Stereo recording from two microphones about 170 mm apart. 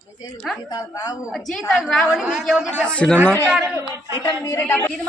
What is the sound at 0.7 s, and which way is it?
Speech, 25° left (ahead or behind).